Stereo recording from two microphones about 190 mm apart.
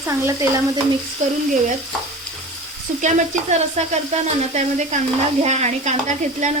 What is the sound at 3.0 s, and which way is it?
Sizzle, 40° right (ahead or behind).